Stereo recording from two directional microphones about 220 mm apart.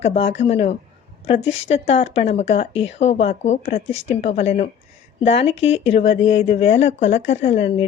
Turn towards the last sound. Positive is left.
turn(degrees=30)  # may be behind; listen again after turning